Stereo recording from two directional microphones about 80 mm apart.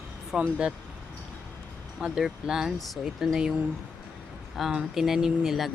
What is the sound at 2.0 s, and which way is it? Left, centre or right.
Speech, centre.